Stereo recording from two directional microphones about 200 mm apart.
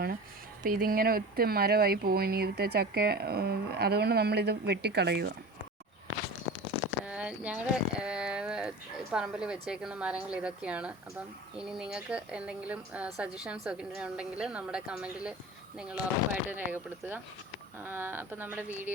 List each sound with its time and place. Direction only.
0.6 s speech: 45° right (ahead or behind)
7.0 s a sound: 5° right (ahead or behind)
9.1 s a woman's voice: 5° right (ahead or behind)